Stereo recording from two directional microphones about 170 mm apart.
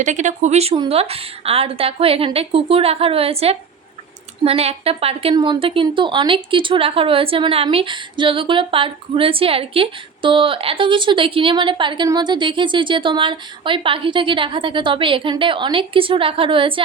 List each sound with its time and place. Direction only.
0.0 s a woman's voice: 45° right (ahead or behind); by 16.8 s 30° right (ahead or behind)